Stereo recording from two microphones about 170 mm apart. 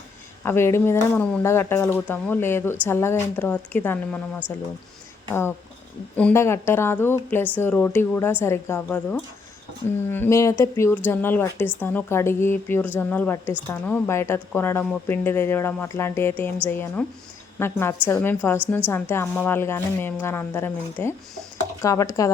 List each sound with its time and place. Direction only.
0.4 s a woman's voice: 15° left (ahead or behind)
5.3 s a woman's voice: 15° left (ahead or behind)